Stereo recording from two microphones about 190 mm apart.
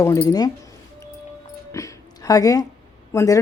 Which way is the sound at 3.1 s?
15° left (ahead or behind).